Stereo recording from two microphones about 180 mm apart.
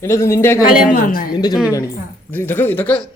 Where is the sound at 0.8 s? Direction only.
50° left (ahead or behind).